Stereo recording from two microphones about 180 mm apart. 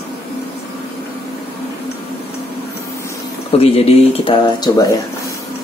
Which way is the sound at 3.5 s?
35° left (ahead or behind).